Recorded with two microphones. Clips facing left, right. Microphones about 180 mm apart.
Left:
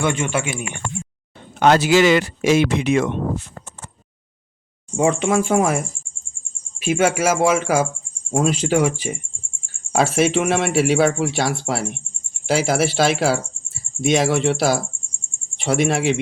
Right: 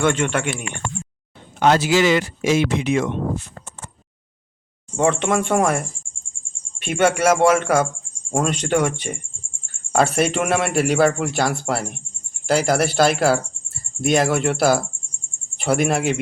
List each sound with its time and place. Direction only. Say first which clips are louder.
0.0 s speech: right 2 dB; 10° left (ahead or behind)
1.5 s speech: left 2 dB; 65° left (ahead or behind)
4.9 s a man's voice: left 1 dB; 5° left (ahead or behind)